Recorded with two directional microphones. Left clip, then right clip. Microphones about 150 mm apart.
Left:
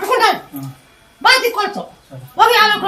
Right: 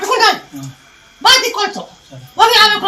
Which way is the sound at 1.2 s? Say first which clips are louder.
Right 2 dB; 20° left (ahead or behind).